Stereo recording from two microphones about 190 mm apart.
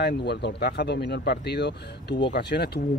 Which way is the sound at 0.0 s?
60° left (ahead or behind).